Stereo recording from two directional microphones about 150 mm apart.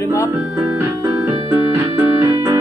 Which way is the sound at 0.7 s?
15° right (ahead or behind).